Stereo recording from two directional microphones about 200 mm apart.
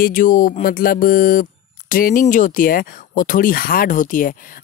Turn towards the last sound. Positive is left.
turn(degrees=40)  # may be behind; listen again after turning